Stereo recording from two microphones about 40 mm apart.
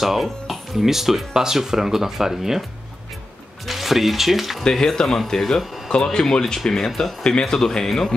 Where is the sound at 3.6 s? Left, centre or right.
Centre.